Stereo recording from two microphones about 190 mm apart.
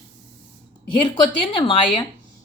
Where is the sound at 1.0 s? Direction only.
25° left (ahead or behind).